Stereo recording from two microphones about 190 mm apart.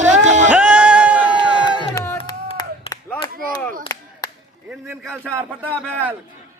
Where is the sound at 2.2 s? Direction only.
25° left (ahead or behind).